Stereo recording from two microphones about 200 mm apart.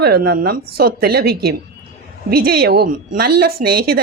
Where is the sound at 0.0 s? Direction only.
50° right (ahead or behind).